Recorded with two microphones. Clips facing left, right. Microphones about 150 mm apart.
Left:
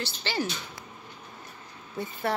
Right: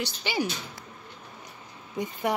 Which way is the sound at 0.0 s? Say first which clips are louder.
Right 2 dB; 15° right (ahead or behind).